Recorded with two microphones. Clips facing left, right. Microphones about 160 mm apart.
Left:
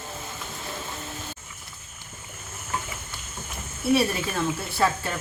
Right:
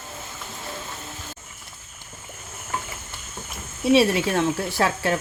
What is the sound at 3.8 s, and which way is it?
Speech, 90° right.